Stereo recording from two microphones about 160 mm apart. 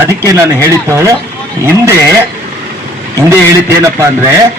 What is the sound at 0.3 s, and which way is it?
Speech, 20° right (ahead or behind).